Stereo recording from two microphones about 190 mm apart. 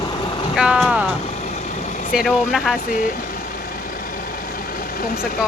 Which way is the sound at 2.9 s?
45° left (ahead or behind).